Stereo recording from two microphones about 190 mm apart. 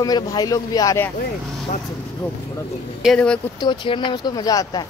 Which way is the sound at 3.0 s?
5° left (ahead or behind).